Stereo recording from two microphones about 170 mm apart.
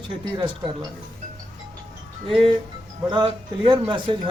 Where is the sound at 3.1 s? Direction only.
25° right (ahead or behind).